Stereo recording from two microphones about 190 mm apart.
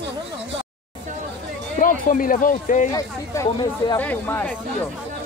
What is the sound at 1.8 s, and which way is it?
Speech, 45° left (ahead or behind).